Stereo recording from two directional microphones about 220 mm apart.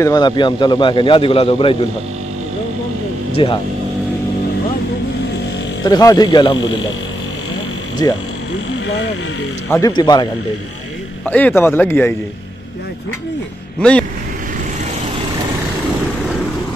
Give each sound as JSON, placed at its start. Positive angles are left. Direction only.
{"t": 0.0, "sound": "a man's voice", "side_deg": 20}
{"t": 3.4, "sound": "a man's voice", "side_deg": 25}
{"t": 5.9, "sound": "a man's voice", "side_deg": 20}
{"t": 9.7, "sound": "a man's voice", "side_deg": 15}
{"t": 11.2, "sound": "a man's voice", "side_deg": 5}
{"t": 13.7, "sound": "speech", "side_deg": 5}